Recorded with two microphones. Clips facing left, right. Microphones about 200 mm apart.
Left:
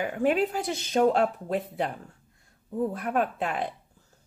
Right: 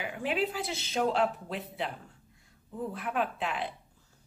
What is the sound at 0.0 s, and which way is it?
Speech, 45° left (ahead or behind).